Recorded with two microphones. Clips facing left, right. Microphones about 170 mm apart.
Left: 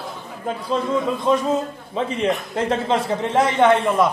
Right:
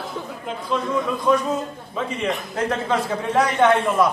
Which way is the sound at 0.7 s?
25° left (ahead or behind).